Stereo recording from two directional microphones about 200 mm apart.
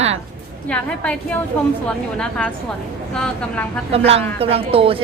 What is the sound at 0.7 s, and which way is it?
A woman's voice, 5° left (ahead or behind).